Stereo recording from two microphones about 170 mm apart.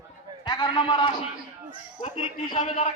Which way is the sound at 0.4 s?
25° left (ahead or behind).